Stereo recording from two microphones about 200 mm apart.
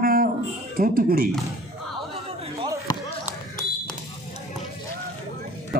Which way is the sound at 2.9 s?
20° left (ahead or behind).